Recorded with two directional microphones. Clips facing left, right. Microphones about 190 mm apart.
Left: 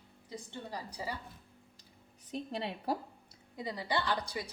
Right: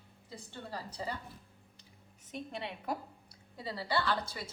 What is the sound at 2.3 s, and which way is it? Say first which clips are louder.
Speech: left 3 dB; 35° left (ahead or behind).